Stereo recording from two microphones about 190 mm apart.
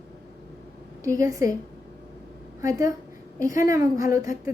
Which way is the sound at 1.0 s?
15° right (ahead or behind).